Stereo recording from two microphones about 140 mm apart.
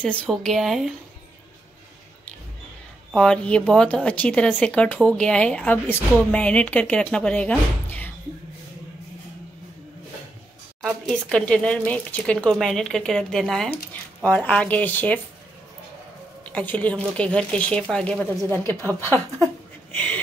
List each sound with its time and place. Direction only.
0.0 s speech: 5° left (ahead or behind)
3.2 s a woman's voice: 5° left (ahead or behind)
10.8 s a woman's voice: 5° left (ahead or behind)
16.4 s a woman's voice: 10° left (ahead or behind)